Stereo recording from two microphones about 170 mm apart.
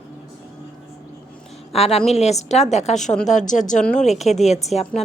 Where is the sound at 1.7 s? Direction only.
35° left (ahead or behind).